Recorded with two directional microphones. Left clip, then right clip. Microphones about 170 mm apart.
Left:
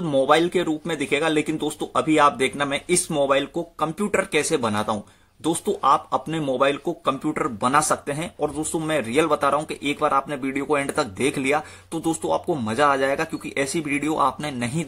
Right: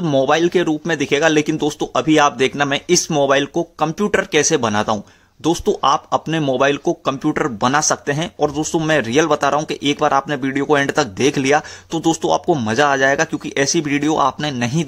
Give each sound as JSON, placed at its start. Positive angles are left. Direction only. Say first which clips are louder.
{"t": 0.0, "sound": "speech", "louder": "right 3 dB", "side_deg": -35}